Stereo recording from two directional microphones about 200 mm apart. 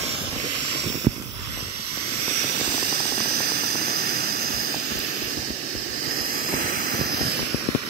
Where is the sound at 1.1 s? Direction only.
25° right (ahead or behind).